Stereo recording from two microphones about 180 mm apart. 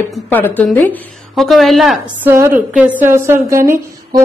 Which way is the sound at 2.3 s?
15° right (ahead or behind).